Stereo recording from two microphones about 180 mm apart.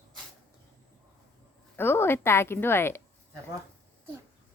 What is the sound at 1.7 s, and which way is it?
A woman's voice, 10° left (ahead or behind).